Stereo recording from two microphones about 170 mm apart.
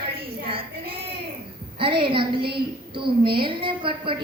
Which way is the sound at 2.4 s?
65° right (ahead or behind).